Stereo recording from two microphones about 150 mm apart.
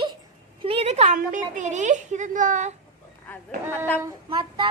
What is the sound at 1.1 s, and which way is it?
A child's voice, 60° right (ahead or behind).